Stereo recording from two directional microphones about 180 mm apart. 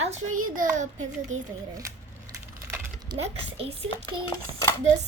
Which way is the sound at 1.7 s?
20° right (ahead or behind).